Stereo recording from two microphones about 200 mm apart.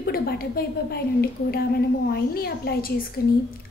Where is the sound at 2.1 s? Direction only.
50° left (ahead or behind).